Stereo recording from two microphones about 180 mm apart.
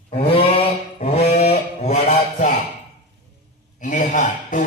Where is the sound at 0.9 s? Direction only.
40° left (ahead or behind).